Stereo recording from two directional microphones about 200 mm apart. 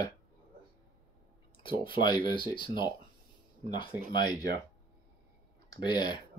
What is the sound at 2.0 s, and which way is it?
Speech, 25° left (ahead or behind).